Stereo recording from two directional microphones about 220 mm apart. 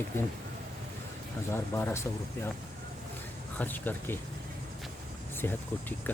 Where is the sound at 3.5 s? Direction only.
10° left (ahead or behind).